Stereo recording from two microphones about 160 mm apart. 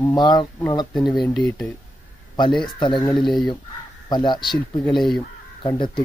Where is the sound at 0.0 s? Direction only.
25° left (ahead or behind).